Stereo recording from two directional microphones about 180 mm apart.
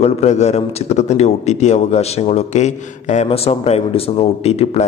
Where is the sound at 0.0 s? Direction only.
40° left (ahead or behind).